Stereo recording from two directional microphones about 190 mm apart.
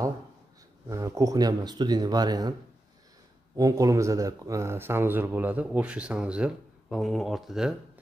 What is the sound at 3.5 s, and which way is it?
Speech, 20° right (ahead or behind).